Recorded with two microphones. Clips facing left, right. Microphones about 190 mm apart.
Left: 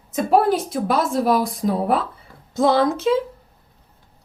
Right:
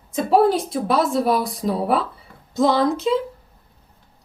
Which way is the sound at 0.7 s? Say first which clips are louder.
Right 1 dB; centre (ahead or behind).